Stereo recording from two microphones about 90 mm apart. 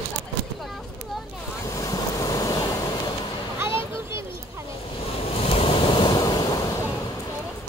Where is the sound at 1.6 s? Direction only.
40° left (ahead or behind).